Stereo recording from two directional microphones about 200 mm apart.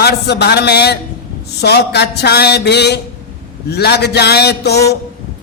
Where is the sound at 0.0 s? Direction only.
55° left (ahead or behind).